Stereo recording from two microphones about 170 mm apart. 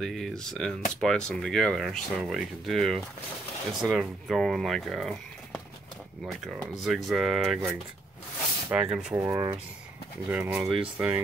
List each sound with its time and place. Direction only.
0.0 s speech: centre (ahead or behind)
8.6 s speech: 5° right (ahead or behind)